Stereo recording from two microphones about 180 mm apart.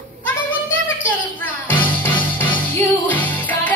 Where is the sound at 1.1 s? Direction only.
10° left (ahead or behind).